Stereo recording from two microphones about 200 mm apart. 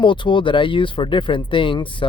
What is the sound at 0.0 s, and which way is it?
Speech, 25° left (ahead or behind).